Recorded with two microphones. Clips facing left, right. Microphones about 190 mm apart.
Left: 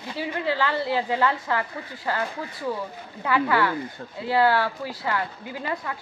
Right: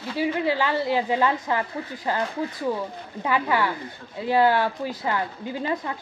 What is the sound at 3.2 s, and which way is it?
A woman's voice, 15° right (ahead or behind).